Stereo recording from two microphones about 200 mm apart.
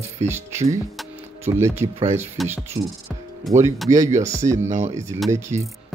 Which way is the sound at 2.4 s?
Centre (ahead or behind).